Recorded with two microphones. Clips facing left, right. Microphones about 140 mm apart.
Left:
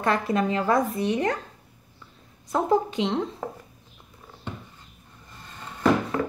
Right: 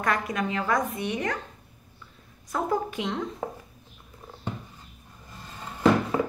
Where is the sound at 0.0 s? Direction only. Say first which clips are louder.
Left 4 dB; 30° left (ahead or behind).